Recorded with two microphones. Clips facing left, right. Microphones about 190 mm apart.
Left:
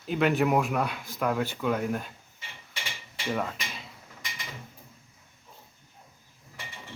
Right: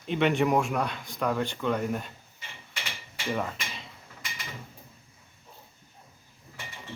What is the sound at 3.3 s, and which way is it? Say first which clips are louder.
Speech: even; centre (ahead or behind).